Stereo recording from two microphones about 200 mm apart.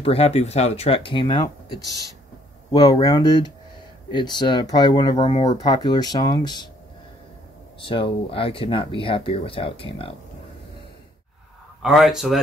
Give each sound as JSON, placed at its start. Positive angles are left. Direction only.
{"t": 0.0, "sound": "speech", "side_deg": 30}
{"t": 7.8, "sound": "speech", "side_deg": 25}
{"t": 11.8, "sound": "speech", "side_deg": 0}